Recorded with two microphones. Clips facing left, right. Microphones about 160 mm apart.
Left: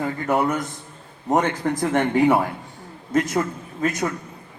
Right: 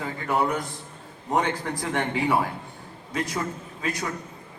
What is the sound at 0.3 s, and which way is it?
A man's voice, 45° left (ahead or behind).